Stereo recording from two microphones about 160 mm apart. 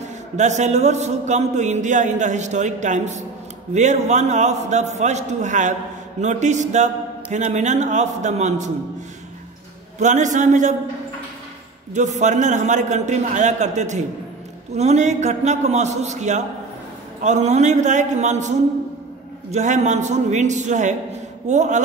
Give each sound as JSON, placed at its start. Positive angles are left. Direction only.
{"t": 0.4, "sound": "a man's voice", "side_deg": -45}
{"t": 9.9, "sound": "a man's voice", "side_deg": -50}
{"t": 11.9, "sound": "a man's voice", "side_deg": -50}